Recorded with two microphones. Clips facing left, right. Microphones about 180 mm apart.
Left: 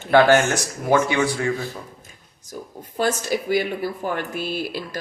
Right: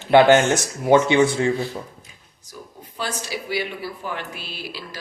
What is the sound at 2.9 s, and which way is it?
Speech, 50° left (ahead or behind).